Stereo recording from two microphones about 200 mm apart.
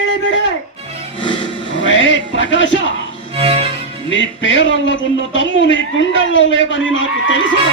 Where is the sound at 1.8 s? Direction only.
70° left (ahead or behind).